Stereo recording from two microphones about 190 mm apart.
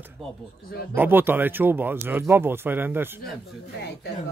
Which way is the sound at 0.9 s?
10° right (ahead or behind).